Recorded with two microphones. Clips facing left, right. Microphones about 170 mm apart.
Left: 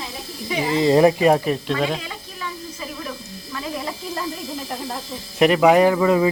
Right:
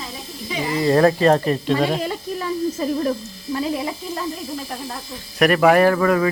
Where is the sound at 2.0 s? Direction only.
40° right (ahead or behind).